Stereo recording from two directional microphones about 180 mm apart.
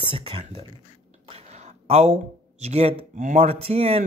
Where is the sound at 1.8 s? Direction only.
35° right (ahead or behind).